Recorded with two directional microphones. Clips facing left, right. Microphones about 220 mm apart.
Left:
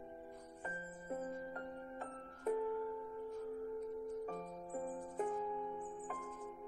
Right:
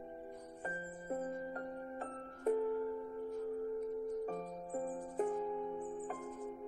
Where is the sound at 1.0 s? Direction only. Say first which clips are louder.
Right 3 dB; 40° right (ahead or behind).